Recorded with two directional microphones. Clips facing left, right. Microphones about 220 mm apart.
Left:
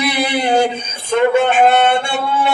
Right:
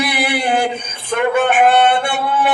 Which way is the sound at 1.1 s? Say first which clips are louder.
Left 2 dB; 25° left (ahead or behind).